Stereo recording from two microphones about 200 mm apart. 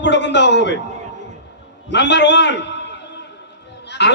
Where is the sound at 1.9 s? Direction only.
60° left (ahead or behind).